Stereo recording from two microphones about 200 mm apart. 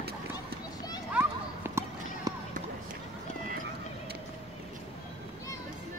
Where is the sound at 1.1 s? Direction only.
10° right (ahead or behind).